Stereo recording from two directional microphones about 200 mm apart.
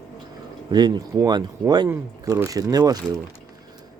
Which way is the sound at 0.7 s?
20° right (ahead or behind).